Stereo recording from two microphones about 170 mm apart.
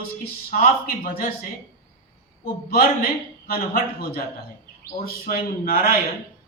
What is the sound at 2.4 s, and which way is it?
A man's voice, 65° left (ahead or behind).